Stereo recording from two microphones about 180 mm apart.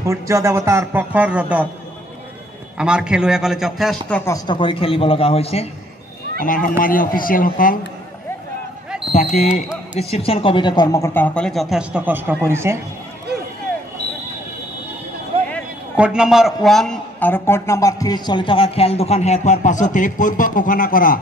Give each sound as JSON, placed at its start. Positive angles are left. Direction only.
{"t": 0.0, "sound": "a man's voice", "side_deg": -15}
{"t": 2.8, "sound": "speech", "side_deg": -5}
{"t": 4.2, "sound": "speech", "side_deg": 15}
{"t": 4.6, "sound": "a man's voice", "side_deg": 30}
{"t": 6.4, "sound": "speech", "side_deg": 50}
{"t": 9.3, "sound": "a man's voice", "side_deg": 40}
{"t": 15.3, "sound": "a sound", "side_deg": -30}
{"t": 16.0, "sound": "a man's voice", "side_deg": -5}